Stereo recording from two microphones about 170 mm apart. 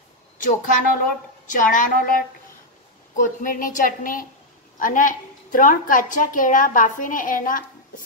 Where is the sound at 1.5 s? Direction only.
50° left (ahead or behind).